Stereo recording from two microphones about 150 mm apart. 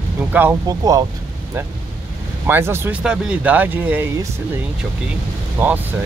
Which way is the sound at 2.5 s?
15° right (ahead or behind).